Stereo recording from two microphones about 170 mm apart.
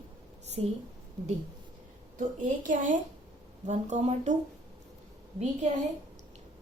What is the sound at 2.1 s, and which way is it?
A woman's voice, 50° right (ahead or behind).